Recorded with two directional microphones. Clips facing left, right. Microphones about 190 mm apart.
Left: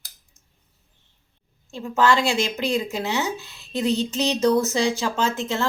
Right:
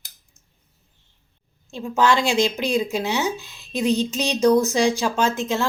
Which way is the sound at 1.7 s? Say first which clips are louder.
Even; 15° right (ahead or behind).